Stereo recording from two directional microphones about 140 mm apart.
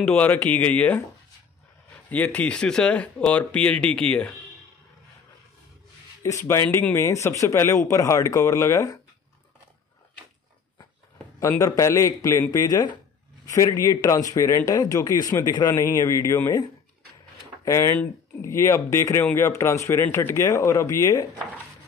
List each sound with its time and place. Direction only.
0.0 s speech: 10° left (ahead or behind)
2.0 s speech: 10° left (ahead or behind)
6.2 s speech: 20° left (ahead or behind)
11.3 s speech: 25° left (ahead or behind)
17.6 s speech: 20° left (ahead or behind)